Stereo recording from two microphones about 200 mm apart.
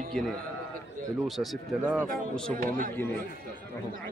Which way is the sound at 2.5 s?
45° right (ahead or behind).